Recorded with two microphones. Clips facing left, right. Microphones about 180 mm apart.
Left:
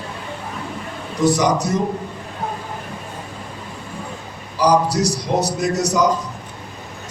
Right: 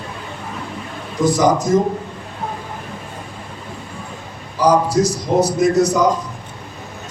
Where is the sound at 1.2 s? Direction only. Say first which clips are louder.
Right 2 dB; 70° left (ahead or behind).